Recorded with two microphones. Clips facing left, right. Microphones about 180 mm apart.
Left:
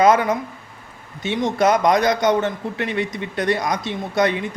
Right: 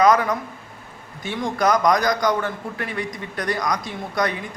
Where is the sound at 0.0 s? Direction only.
25° left (ahead or behind).